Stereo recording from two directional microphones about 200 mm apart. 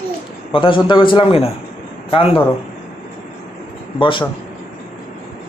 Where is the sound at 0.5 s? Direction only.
25° left (ahead or behind).